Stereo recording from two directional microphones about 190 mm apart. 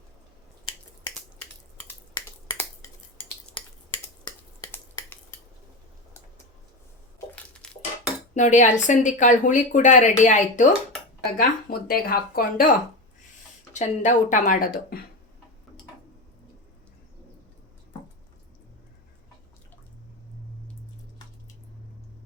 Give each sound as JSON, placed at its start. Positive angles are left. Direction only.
{"t": 0.6, "sound": "finger snapping", "side_deg": 15}
{"t": 4.2, "sound": "a sound", "side_deg": 20}
{"t": 7.3, "sound": "dishes", "side_deg": 5}
{"t": 8.4, "sound": "speech", "side_deg": 40}
{"t": 11.3, "sound": "speech", "side_deg": 50}
{"t": 13.7, "sound": "speech", "side_deg": 40}